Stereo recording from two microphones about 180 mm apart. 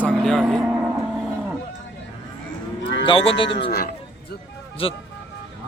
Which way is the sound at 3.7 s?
60° left (ahead or behind).